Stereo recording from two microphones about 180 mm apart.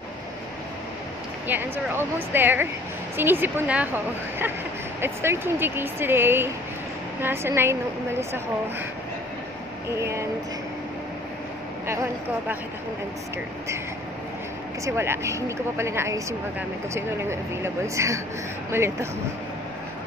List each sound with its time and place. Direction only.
1.5 s speech: 10° right (ahead or behind)
9.8 s speech: 15° right (ahead or behind)
11.9 s speech: 15° right (ahead or behind)
14.9 s speech: 15° right (ahead or behind)